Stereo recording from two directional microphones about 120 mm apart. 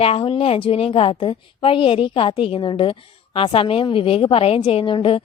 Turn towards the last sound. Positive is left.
turn(degrees=45)  # may be behind; listen again after turning